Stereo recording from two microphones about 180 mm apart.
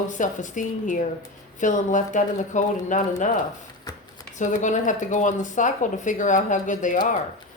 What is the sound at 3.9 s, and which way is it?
Shuffling cards, 20° left (ahead or behind).